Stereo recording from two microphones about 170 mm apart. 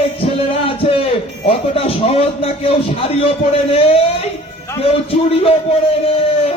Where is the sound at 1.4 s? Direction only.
35° left (ahead or behind).